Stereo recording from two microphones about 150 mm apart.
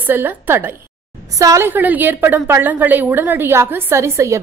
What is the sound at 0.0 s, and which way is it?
A woman's voice, 15° right (ahead or behind).